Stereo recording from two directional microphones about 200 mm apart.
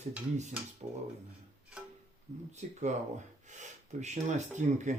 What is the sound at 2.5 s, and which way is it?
Speech, 35° right (ahead or behind).